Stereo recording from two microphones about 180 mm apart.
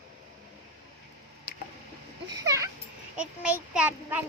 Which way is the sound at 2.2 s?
20° right (ahead or behind).